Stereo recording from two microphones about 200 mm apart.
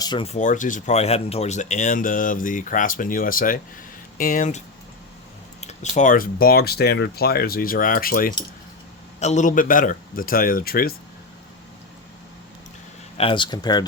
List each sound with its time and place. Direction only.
0.0 s speech: 25° left (ahead or behind); by 10.9 s 50° left (ahead or behind)
13.1 s speech: 25° left (ahead or behind)